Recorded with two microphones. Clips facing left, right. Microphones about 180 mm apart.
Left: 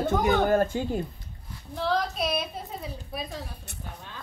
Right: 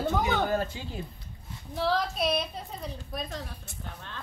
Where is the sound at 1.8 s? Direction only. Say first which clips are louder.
Even; centre (ahead or behind).